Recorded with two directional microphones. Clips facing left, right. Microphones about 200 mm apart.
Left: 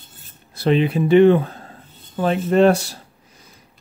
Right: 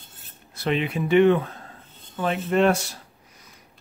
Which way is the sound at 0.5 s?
35° left (ahead or behind).